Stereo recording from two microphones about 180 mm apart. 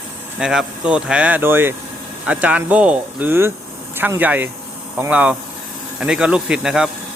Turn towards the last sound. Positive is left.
turn(degrees=-5)  # may be behind; listen again after turning